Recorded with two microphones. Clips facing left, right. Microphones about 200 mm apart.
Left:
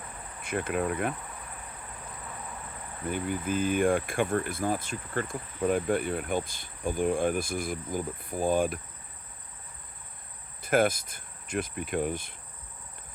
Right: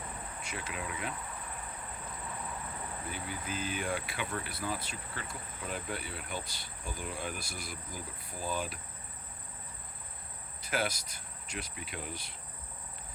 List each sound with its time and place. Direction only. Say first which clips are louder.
0.4 s speech: left 13 dB; 55° left (ahead or behind)
3.1 s speech: left 12 dB; 55° left (ahead or behind)
10.6 s speech: left 10 dB; 50° left (ahead or behind)